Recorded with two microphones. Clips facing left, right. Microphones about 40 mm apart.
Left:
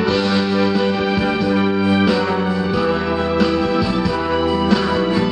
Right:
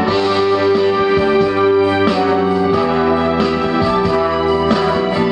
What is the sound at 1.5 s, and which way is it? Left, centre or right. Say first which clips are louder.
Music: right 5 dB; centre.